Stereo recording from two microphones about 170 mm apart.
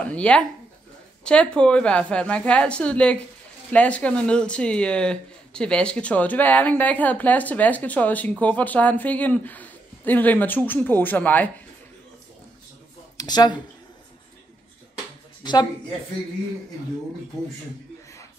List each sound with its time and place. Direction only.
0.0 s speech: 5° left (ahead or behind)
13.2 s speech: 25° left (ahead or behind)